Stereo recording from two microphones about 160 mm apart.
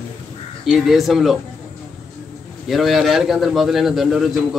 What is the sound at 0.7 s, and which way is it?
Speech, centre (ahead or behind).